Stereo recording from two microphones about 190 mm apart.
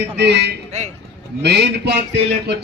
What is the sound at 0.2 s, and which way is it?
A man's voice, 60° right (ahead or behind).